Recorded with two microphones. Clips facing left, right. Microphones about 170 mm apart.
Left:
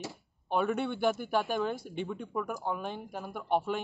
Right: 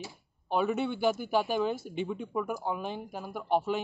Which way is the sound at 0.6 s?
5° right (ahead or behind).